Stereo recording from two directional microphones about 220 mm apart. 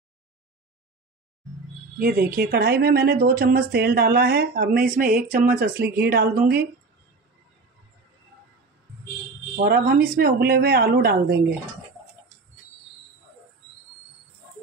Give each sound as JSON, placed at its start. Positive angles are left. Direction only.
{"t": 2.0, "sound": "speech", "side_deg": -40}
{"t": 9.6, "sound": "speech", "side_deg": -45}